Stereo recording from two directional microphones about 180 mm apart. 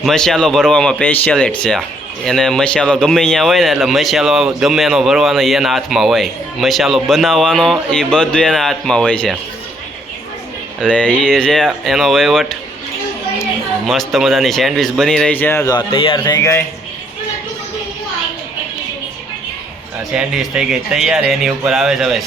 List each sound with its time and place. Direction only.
0.0 s speech: centre (ahead or behind)
10.8 s speech: 5° left (ahead or behind)
13.8 s speech: centre (ahead or behind)
15.7 s a man's voice: 30° left (ahead or behind)
20.1 s speech: 5° right (ahead or behind)